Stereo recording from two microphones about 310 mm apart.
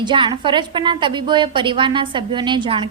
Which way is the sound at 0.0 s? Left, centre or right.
Centre.